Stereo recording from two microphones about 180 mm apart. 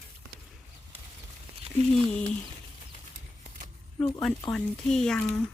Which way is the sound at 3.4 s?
45° right (ahead or behind).